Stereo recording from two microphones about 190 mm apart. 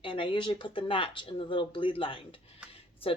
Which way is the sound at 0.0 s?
25° left (ahead or behind).